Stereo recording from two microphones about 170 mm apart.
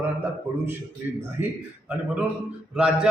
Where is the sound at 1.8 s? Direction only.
5° right (ahead or behind).